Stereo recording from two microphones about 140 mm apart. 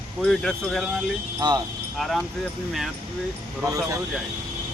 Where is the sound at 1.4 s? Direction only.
30° right (ahead or behind).